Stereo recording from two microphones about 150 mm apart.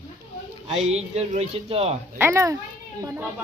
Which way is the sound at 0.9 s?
45° right (ahead or behind).